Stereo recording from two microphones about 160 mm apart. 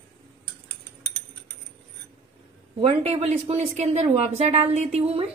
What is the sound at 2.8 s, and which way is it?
Speech, 40° right (ahead or behind).